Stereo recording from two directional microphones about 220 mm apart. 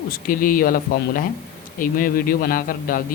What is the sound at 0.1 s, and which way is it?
Speech, 40° left (ahead or behind).